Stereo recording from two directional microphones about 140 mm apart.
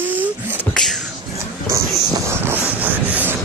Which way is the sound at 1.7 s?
20° right (ahead or behind).